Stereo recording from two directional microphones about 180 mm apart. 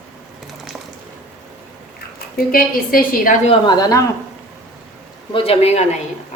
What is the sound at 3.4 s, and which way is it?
Speech, 25° left (ahead or behind).